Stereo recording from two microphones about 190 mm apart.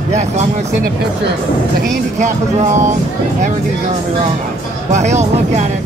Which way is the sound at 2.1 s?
40° right (ahead or behind).